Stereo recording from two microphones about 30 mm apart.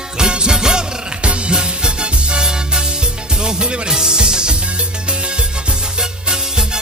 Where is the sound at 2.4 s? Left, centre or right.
Right.